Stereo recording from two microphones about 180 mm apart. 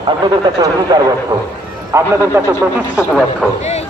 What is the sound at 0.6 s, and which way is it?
A man's voice, 20° right (ahead or behind).